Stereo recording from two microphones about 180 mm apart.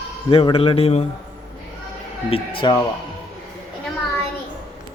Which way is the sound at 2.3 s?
30° left (ahead or behind).